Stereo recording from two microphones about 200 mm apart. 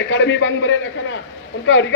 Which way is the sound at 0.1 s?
65° left (ahead or behind).